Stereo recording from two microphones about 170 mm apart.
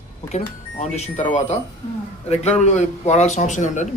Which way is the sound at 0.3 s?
40° left (ahead or behind).